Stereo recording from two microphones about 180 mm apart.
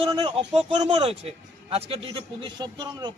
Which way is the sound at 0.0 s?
30° right (ahead or behind).